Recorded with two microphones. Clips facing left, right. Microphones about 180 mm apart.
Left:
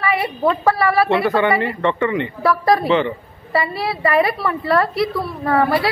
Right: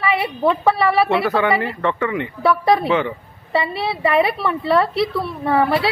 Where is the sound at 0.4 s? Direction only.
Centre (ahead or behind).